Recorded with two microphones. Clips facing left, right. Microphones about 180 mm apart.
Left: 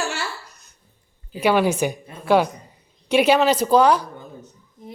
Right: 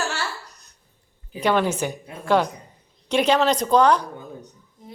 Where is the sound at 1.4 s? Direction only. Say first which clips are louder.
Left 3 dB; 10° left (ahead or behind).